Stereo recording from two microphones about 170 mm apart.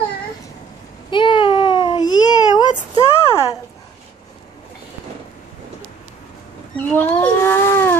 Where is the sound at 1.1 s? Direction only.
30° left (ahead or behind).